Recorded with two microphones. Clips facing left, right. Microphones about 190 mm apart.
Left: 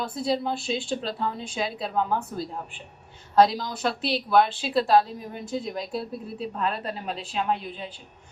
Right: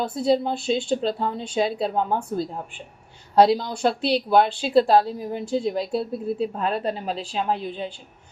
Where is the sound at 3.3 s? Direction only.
30° right (ahead or behind).